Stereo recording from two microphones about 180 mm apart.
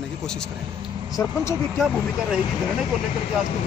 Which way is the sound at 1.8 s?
5° right (ahead or behind).